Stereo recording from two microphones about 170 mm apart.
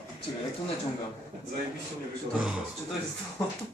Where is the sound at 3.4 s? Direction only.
20° left (ahead or behind).